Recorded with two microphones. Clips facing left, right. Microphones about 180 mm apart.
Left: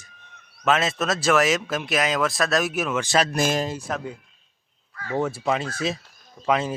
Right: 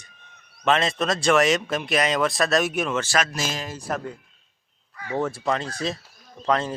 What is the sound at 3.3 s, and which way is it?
Speech, 55° left (ahead or behind).